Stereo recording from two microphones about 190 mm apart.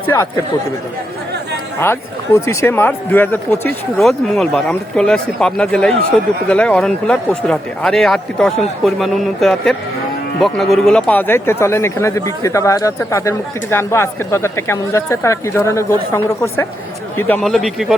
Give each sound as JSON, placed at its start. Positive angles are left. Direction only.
{"t": 0.1, "sound": "speech", "side_deg": 15}
{"t": 1.8, "sound": "speech", "side_deg": 15}